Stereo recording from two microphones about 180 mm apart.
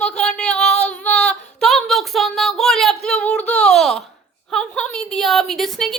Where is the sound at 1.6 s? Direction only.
Centre (ahead or behind).